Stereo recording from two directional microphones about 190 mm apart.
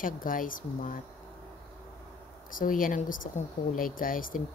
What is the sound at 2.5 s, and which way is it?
Speech, 45° left (ahead or behind).